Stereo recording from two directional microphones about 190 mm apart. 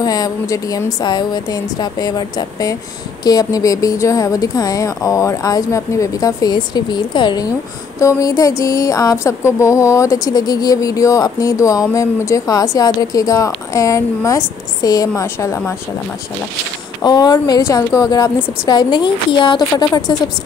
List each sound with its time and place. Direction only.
0.0 s a woman's voice: 20° left (ahead or behind)
17.0 s a woman's voice: 20° left (ahead or behind)